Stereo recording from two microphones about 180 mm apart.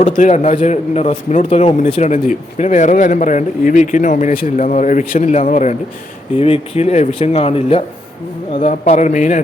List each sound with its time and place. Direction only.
0.0 s a man's voice: 40° left (ahead or behind)